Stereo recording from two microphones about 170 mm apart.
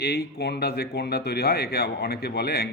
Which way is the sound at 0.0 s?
70° left (ahead or behind).